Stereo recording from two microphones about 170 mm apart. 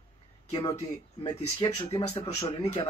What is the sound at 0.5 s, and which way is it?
Speech, 30° left (ahead or behind).